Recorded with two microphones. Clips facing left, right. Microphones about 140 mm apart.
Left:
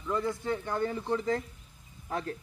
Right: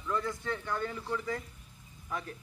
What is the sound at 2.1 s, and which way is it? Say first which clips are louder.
Speech: left 5 dB; 50° left (ahead or behind).